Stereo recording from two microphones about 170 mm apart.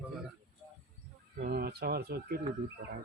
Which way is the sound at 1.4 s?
65° right (ahead or behind).